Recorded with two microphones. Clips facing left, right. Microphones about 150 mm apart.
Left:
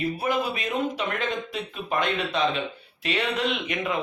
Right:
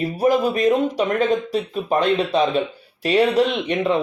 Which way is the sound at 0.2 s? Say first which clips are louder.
Right 9 dB; 40° right (ahead or behind).